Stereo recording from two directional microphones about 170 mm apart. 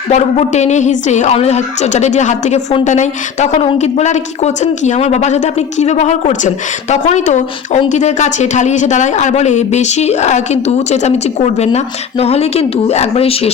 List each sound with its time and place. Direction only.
0.1 s speech: 40° left (ahead or behind)